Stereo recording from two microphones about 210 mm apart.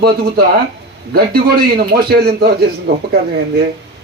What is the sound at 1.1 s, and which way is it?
A man's voice, 50° right (ahead or behind).